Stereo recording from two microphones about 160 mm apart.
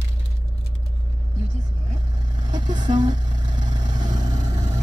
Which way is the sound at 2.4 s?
50° right (ahead or behind).